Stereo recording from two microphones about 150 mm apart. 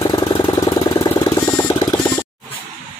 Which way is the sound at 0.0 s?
30° left (ahead or behind).